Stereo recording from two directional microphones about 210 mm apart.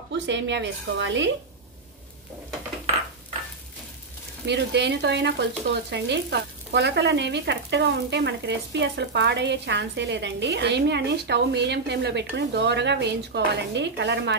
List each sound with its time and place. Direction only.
0.1 s frying: 55° right (ahead or behind)
4.5 s frying: 55° right (ahead or behind)